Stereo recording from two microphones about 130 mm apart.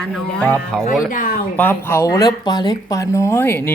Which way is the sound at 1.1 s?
90° left.